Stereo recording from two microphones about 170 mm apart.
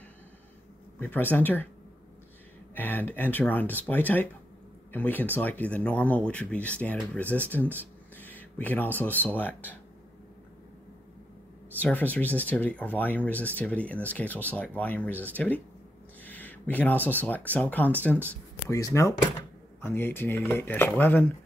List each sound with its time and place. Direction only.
0.9 s speech: 10° left (ahead or behind)
2.7 s speech: 10° left (ahead or behind)
11.8 s speech: 10° left (ahead or behind)